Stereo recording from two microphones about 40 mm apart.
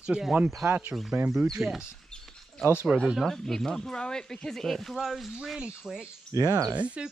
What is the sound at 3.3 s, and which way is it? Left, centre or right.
Speech, centre.